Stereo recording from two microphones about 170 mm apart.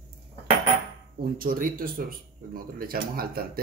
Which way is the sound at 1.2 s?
55° right (ahead or behind).